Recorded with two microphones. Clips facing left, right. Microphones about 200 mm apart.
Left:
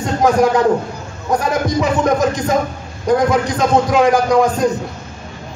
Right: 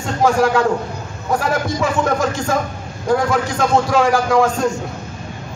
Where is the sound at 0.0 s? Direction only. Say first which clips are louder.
Left 2 dB; 20° left (ahead or behind).